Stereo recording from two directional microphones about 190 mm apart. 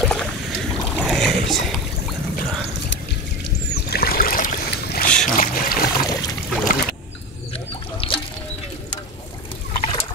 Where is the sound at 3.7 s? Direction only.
55° left (ahead or behind).